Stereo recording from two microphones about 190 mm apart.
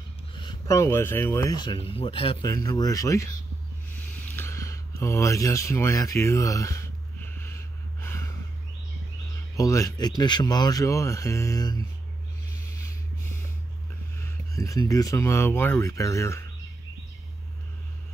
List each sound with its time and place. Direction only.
0.4 s speech: 20° left (ahead or behind)
2.4 s speech: 20° left (ahead or behind)
4.0 s a sound: 10° left (ahead or behind)
9.6 s speech: 15° left (ahead or behind)
14.1 s speech: 15° left (ahead or behind)